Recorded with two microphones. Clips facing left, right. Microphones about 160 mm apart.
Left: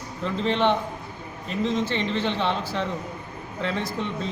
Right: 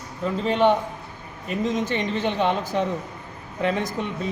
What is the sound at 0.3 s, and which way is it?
A man's voice, 10° right (ahead or behind).